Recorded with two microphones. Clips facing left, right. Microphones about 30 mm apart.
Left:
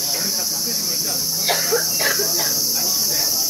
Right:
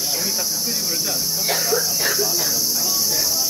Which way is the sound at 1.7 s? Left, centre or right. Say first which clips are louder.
Left 1 dB; centre.